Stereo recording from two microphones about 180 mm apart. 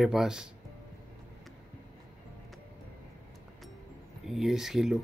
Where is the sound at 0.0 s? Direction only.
Centre (ahead or behind).